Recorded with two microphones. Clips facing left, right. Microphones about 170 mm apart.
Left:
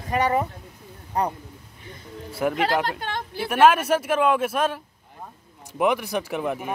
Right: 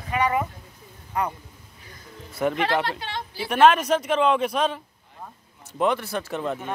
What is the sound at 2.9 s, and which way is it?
Speech, 50° left (ahead or behind).